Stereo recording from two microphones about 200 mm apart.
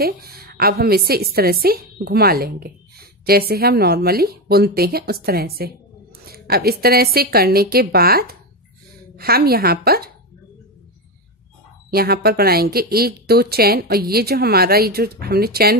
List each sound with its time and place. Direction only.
0.0 s a woman's voice: 50° right (ahead or behind)
11.9 s a woman's voice: 50° right (ahead or behind)